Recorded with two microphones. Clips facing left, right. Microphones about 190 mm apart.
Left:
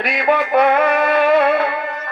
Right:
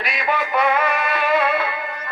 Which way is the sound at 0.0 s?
55° left (ahead or behind).